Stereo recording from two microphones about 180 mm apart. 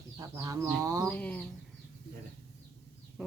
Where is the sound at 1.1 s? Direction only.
10° left (ahead or behind).